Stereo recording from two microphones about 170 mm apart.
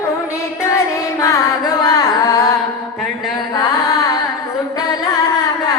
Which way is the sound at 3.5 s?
20° left (ahead or behind).